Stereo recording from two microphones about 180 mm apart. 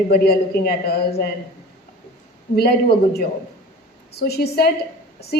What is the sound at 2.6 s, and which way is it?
A woman's voice, 65° left (ahead or behind).